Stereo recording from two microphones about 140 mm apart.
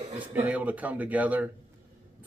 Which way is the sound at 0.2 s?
10° right (ahead or behind).